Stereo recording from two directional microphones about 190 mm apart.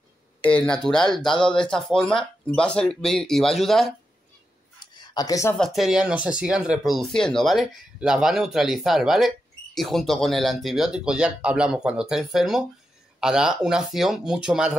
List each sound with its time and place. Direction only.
0.4 s speech: 5° left (ahead or behind)
4.9 s a sound: 20° left (ahead or behind)
5.6 s speech: centre (ahead or behind)